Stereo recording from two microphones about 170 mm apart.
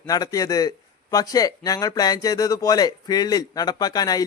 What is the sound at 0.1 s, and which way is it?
Speech, 20° left (ahead or behind).